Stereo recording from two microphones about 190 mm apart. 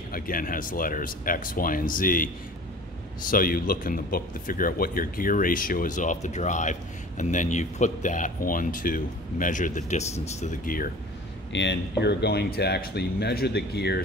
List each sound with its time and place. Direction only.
0.1 s a man's voice: 45° left (ahead or behind)
11.5 s speech: 65° left (ahead or behind)